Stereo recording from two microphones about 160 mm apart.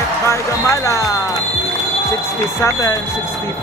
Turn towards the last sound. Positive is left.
turn(degrees=20)  # may be behind; listen again after turning